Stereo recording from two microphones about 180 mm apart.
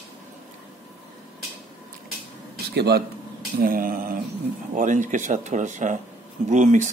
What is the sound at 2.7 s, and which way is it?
Speech, 65° right (ahead or behind).